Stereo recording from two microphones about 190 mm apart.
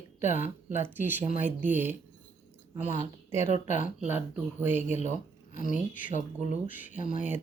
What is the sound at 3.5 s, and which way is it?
Speech, 40° left (ahead or behind).